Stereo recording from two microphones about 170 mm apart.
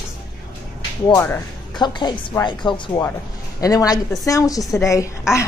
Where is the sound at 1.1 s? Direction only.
20° left (ahead or behind).